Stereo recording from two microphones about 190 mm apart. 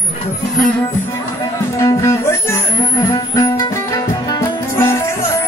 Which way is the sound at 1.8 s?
15° left (ahead or behind).